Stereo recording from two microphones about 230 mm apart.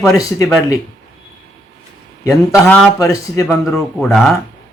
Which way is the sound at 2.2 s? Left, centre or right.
Centre.